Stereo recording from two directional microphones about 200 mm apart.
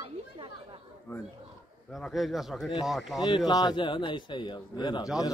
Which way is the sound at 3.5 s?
20° left (ahead or behind).